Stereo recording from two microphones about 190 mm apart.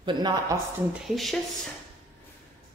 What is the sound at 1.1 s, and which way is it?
Speech, centre (ahead or behind).